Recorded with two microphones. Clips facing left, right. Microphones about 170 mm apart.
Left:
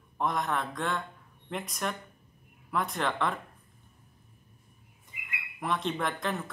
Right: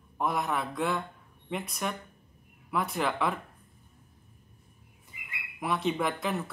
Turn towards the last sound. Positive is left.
turn(degrees=-5)  # may be behind; listen again after turning